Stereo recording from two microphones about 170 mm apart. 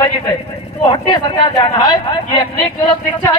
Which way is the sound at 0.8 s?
30° left (ahead or behind).